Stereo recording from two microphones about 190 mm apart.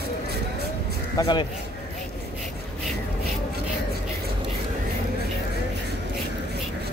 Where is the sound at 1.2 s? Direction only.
25° left (ahead or behind).